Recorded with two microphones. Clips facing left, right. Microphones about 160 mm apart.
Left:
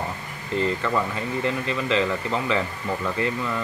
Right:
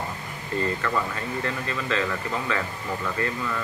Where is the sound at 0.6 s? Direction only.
15° left (ahead or behind).